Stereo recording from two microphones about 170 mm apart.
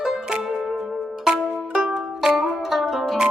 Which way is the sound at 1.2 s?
5° right (ahead or behind).